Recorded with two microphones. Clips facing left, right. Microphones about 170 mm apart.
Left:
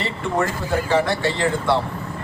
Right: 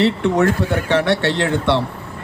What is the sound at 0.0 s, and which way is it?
A man's voice, 70° right (ahead or behind).